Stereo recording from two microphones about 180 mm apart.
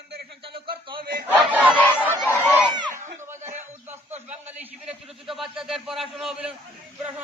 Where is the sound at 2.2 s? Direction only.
10° left (ahead or behind).